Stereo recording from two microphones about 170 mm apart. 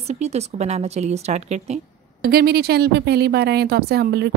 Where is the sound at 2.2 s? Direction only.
65° right (ahead or behind).